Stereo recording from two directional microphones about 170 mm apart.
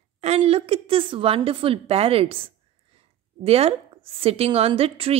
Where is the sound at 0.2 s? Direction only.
35° right (ahead or behind).